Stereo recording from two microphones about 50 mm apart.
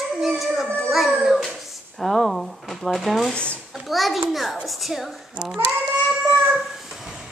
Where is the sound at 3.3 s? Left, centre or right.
Left.